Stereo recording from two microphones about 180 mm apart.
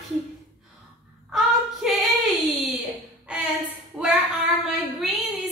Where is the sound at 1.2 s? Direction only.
Centre (ahead or behind).